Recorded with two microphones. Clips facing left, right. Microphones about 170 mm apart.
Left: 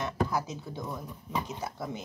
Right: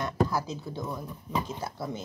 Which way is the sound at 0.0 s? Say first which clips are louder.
Right 2 dB; 20° left (ahead or behind).